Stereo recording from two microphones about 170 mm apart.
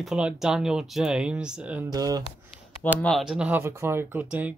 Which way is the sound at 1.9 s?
20° right (ahead or behind).